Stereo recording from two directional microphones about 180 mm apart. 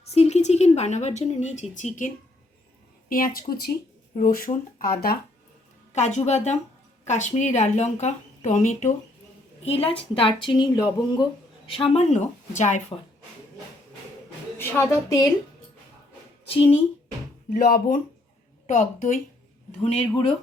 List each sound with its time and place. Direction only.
0.1 s speech: 35° left (ahead or behind)
3.1 s speech: 50° left (ahead or behind)
5.9 s speech: 40° left (ahead or behind)
9.6 s speech: 35° left (ahead or behind)
14.6 s a woman's voice: 15° left (ahead or behind)
16.5 s speech: 30° left (ahead or behind)
17.5 s speech: 45° left (ahead or behind)